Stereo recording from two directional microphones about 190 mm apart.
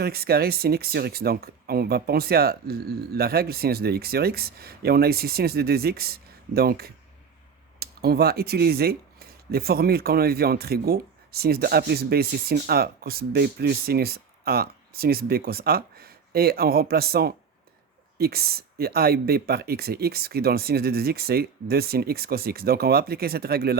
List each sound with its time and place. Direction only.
0.0 s speech: 55° right (ahead or behind)